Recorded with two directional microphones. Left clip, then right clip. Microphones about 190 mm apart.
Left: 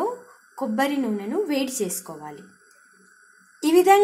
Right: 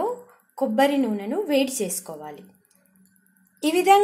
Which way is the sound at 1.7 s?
30° left (ahead or behind).